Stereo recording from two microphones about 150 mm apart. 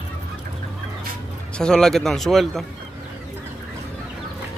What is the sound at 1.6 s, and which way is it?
A man's voice, 5° left (ahead or behind).